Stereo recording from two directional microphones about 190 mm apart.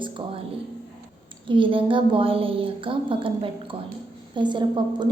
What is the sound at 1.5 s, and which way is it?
A woman's voice, 25° right (ahead or behind).